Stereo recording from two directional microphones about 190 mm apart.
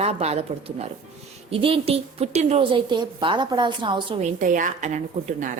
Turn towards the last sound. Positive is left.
turn(degrees=-40)  # may be behind; listen again after turning